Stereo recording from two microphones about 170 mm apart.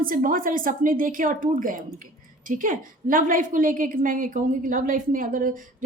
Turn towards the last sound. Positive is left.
turn(degrees=-50)  # may be behind; listen again after turning